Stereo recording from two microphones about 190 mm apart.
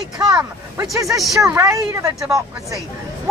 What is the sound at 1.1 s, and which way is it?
Speech, centre (ahead or behind).